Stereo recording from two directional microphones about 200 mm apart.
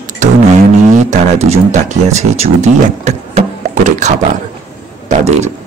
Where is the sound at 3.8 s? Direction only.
35° right (ahead or behind).